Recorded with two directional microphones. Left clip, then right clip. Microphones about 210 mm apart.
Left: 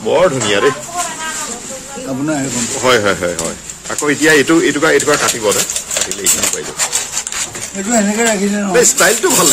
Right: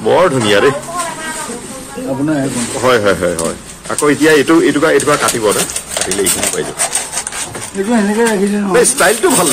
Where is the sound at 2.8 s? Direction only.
5° left (ahead or behind).